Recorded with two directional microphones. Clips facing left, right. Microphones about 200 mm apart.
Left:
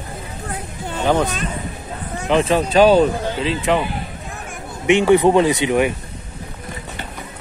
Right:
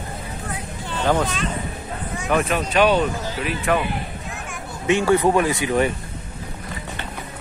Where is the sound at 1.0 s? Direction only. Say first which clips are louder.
Left 3 dB; 20° left (ahead or behind).